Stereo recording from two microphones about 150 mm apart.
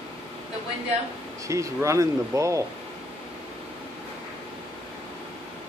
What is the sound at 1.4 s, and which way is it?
Speech, 20° right (ahead or behind).